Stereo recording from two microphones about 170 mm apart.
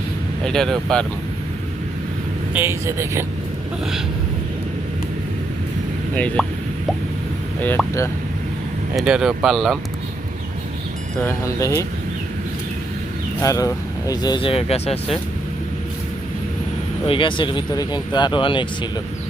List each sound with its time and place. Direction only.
0.4 s speech: 5° left (ahead or behind)
2.5 s speech: 15° right (ahead or behind)
6.1 s speech: 10° left (ahead or behind)
7.8 s speech: centre (ahead or behind)
9.0 s speech: 5° right (ahead or behind)
11.2 s speech: 15° left (ahead or behind)
13.4 s speech: 20° left (ahead or behind); by 15.2 s 35° left (ahead or behind)
17.1 s speech: 30° left (ahead or behind)